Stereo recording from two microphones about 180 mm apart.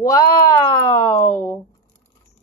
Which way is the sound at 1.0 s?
15° left (ahead or behind).